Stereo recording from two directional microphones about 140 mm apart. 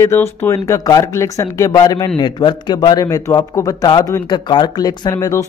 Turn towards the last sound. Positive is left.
turn(degrees=20)  # may be behind; listen again after turning